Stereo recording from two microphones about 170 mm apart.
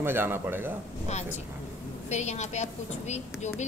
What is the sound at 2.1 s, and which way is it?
A woman's voice, 40° left (ahead or behind).